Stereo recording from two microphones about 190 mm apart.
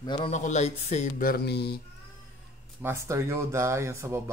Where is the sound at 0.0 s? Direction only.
25° left (ahead or behind).